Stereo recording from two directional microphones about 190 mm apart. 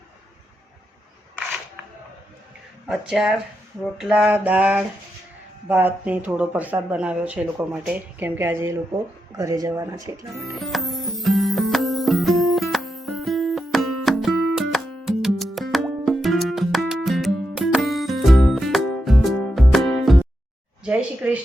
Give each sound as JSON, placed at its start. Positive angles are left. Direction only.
{"t": 2.8, "sound": "speech", "side_deg": -5}
{"t": 10.6, "sound": "music", "side_deg": 0}
{"t": 20.8, "sound": "a sound", "side_deg": -5}